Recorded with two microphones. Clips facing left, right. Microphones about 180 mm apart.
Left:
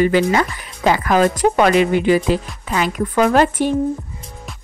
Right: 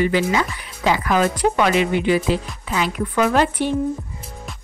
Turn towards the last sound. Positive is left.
turn(degrees=45)  # may be behind; listen again after turning